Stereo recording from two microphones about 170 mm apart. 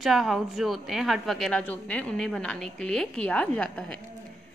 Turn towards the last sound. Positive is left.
turn(degrees=5)  # may be behind; listen again after turning